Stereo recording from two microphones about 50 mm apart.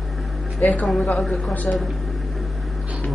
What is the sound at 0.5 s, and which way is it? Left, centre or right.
Speech, left.